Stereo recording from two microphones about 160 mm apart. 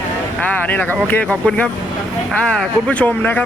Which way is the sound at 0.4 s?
10° left (ahead or behind).